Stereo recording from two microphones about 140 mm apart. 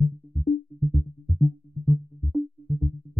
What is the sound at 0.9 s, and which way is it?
Music, centre (ahead or behind).